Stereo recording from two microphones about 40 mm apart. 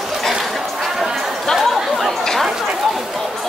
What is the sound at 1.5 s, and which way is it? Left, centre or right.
Chatter, centre.